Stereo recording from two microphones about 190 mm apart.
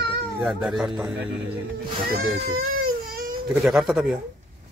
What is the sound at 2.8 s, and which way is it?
Baby cry, 50° right (ahead or behind).